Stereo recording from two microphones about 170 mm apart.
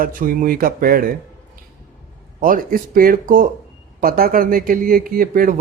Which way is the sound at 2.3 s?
55° right (ahead or behind).